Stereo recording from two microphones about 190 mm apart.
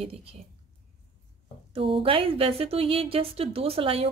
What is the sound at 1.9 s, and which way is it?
A woman's voice, 30° right (ahead or behind).